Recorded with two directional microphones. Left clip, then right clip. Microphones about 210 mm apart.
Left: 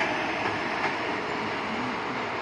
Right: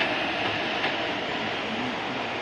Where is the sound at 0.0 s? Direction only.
20° right (ahead or behind).